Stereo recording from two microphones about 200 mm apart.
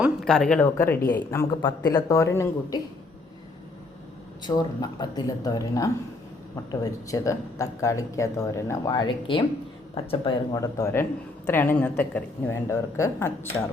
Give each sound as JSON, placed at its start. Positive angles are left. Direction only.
{"t": 0.0, "sound": "speech", "side_deg": 0}
{"t": 4.4, "sound": "speech", "side_deg": 20}
{"t": 7.1, "sound": "speech", "side_deg": 15}